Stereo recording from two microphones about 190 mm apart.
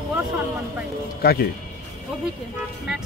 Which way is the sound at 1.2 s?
55° left (ahead or behind).